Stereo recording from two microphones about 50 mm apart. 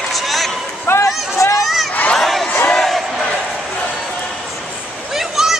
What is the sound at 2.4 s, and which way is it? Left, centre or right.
Crowd, left.